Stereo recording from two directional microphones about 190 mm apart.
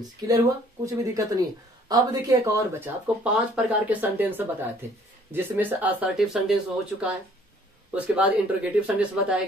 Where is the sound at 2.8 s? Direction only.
5° right (ahead or behind).